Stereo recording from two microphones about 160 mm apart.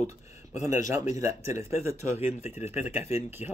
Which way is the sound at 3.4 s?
45° left (ahead or behind).